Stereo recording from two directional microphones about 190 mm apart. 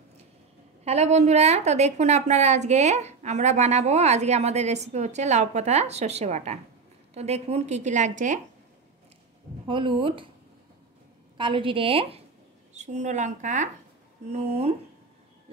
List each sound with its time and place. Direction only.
0.8 s a woman's voice: 35° right (ahead or behind)
9.7 s a woman's voice: 25° right (ahead or behind)
11.3 s a woman's voice: 25° right (ahead or behind)